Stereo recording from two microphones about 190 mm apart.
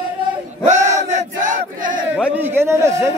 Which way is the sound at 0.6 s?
40° right (ahead or behind).